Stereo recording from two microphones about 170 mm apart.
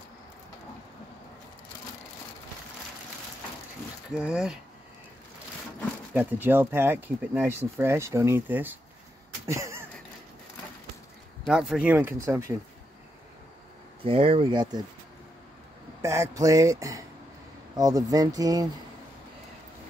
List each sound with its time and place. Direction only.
4.1 s speech: 5° right (ahead or behind)
6.1 s speech: 10° right (ahead or behind)
9.5 s a sound: 15° right (ahead or behind)
11.4 s speech: 5° right (ahead or behind)
14.0 s speech: 35° right (ahead or behind)
16.0 s speech: 15° right (ahead or behind)